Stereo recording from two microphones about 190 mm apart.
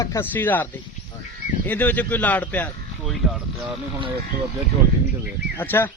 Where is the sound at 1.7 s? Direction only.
10° left (ahead or behind).